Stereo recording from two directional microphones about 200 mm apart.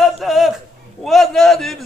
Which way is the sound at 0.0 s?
Centre (ahead or behind).